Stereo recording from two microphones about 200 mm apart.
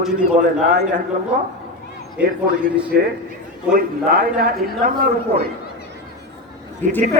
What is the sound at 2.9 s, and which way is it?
Speech, 50° right (ahead or behind).